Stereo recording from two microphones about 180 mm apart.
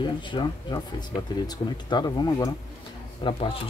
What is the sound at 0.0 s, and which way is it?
Speech, 25° left (ahead or behind).